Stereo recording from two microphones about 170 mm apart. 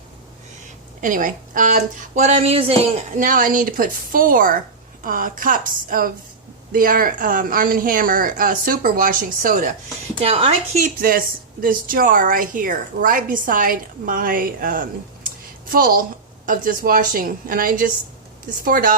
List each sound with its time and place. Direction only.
1.0 s speech: 50° right (ahead or behind); by 3.0 s 35° right (ahead or behind)
3.2 s a woman's voice: 50° right (ahead or behind)
10.2 s a woman's voice: 35° right (ahead or behind); by 18.9 s 55° right (ahead or behind)